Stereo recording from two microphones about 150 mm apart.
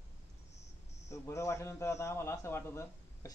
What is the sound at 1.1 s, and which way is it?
A man's voice, 20° left (ahead or behind).